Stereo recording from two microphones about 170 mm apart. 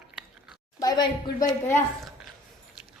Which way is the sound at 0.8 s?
20° left (ahead or behind).